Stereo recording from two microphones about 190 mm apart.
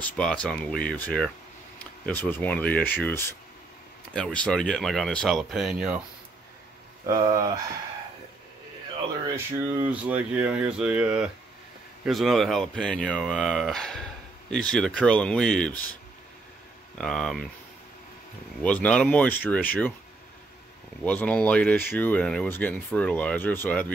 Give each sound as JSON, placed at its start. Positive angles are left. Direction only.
{"t": 0.0, "sound": "speech", "side_deg": 5}
{"t": 7.1, "sound": "speech", "side_deg": -20}
{"t": 9.8, "sound": "speech", "side_deg": -10}
{"t": 17.0, "sound": "speech", "side_deg": 5}
{"t": 18.6, "sound": "speech", "side_deg": 5}
{"t": 21.0, "sound": "speech", "side_deg": 10}